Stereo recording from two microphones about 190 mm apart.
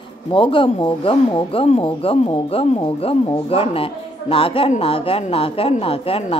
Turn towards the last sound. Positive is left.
turn(degrees=30)  # may be behind; listen again after turning